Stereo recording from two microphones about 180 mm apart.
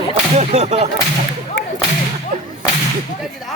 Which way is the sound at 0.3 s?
40° right (ahead or behind).